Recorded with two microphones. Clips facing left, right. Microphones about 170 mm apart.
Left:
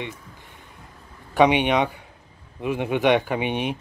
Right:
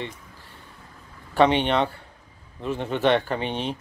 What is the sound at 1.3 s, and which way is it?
Speech, 10° left (ahead or behind).